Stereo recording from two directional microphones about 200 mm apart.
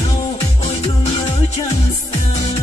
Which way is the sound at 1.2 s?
35° left (ahead or behind).